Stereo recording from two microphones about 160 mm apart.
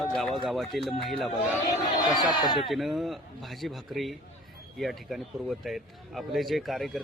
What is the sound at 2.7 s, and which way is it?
Speech, centre (ahead or behind).